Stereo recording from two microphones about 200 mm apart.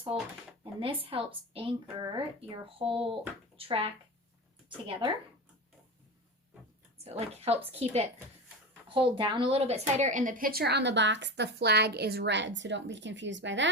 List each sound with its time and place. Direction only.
0.1 s speech: 30° right (ahead or behind)
7.0 s a woman's voice: 30° right (ahead or behind); by 13.7 s 65° right (ahead or behind)